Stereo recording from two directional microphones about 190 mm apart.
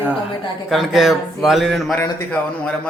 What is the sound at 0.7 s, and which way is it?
Speech, centre (ahead or behind).